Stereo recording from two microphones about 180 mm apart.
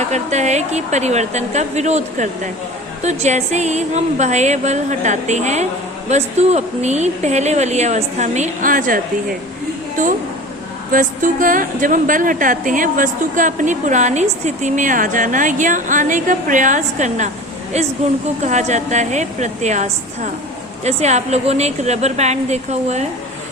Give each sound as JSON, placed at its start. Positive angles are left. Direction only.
{"t": 0.1, "sound": "speech", "side_deg": -40}
{"t": 10.9, "sound": "a woman's voice", "side_deg": -45}